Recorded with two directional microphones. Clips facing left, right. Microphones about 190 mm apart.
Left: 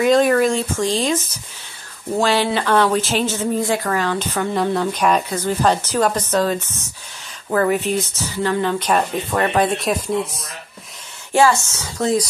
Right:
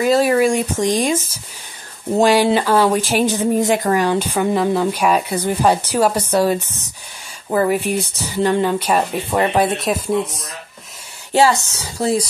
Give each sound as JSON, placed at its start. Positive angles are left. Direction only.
{"t": 0.0, "sound": "speech", "side_deg": -5}
{"t": 8.6, "sound": "speech", "side_deg": -10}
{"t": 9.8, "sound": "speech", "side_deg": 0}
{"t": 11.4, "sound": "speech", "side_deg": -35}